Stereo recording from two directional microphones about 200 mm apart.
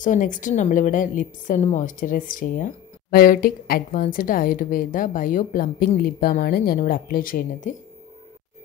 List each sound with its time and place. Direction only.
0.0 s a woman's voice: 40° left (ahead or behind)